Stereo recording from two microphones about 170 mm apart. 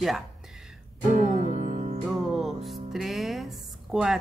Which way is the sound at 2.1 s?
Centre (ahead or behind).